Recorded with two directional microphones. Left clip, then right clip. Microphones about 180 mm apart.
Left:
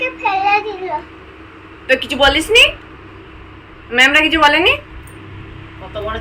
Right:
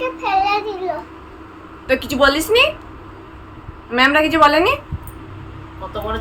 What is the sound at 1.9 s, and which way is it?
Speech, 10° right (ahead or behind).